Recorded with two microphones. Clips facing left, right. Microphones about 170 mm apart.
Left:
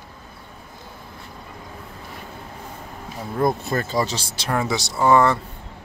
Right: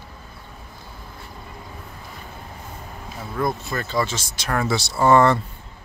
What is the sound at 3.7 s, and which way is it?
Speech, 45° left (ahead or behind).